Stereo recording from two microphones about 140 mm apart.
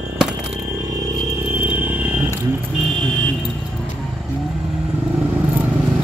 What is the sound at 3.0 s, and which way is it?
Vehicle, 5° left (ahead or behind).